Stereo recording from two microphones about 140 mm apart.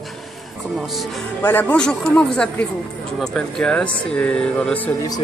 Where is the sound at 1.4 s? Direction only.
15° left (ahead or behind).